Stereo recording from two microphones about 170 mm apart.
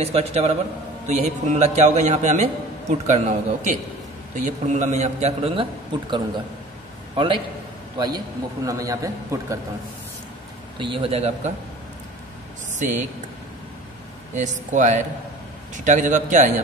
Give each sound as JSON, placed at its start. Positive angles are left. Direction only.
{"t": 0.0, "sound": "a man's voice", "side_deg": -40}
{"t": 8.6, "sound": "a man's voice", "side_deg": -20}
{"t": 10.8, "sound": "a man's voice", "side_deg": -30}
{"t": 12.7, "sound": "speech", "side_deg": -45}
{"t": 14.3, "sound": "a man's voice", "side_deg": -45}